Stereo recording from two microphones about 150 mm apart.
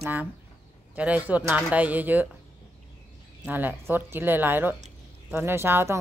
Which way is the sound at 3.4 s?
15° right (ahead or behind).